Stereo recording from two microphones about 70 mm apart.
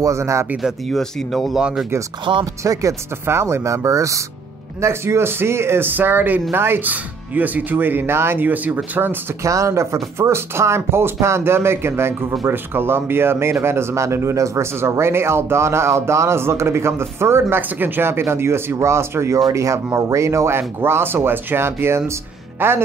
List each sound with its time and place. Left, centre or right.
0.0 s speech: right
0.6 s speech: centre
2.3 s speech: right
2.6 s speech: right
3.3 s speech: right
9.4 s speech: right